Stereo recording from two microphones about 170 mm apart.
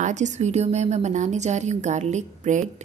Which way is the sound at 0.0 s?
45° right (ahead or behind).